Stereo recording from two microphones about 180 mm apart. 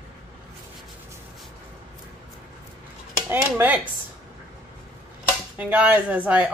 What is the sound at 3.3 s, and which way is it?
Speech, 10° right (ahead or behind).